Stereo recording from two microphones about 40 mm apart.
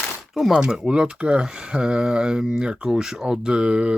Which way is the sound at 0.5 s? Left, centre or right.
Right.